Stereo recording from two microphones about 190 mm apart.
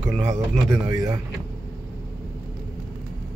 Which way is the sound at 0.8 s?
15° right (ahead or behind).